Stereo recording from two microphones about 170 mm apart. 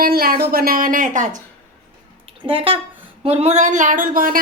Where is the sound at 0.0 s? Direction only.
60° right (ahead or behind).